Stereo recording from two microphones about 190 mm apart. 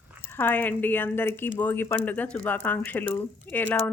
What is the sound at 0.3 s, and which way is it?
Speech, 10° left (ahead or behind).